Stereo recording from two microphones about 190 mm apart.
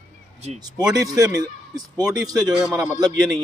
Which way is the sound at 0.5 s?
20° right (ahead or behind).